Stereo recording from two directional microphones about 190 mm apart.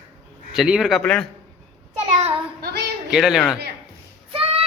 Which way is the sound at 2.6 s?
55° right (ahead or behind).